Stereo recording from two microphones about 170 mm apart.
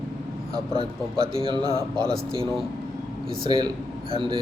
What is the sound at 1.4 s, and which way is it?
Speech, 30° right (ahead or behind).